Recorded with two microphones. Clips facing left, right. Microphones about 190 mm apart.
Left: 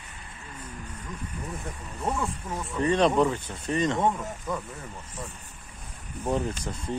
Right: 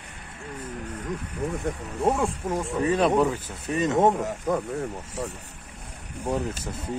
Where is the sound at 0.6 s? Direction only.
70° right (ahead or behind); by 2.5 s 55° right (ahead or behind).